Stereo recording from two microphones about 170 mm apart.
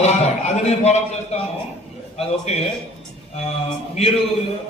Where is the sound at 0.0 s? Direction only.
40° left (ahead or behind).